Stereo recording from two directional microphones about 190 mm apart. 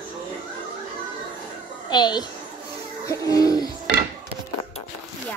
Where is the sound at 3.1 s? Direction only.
20° left (ahead or behind).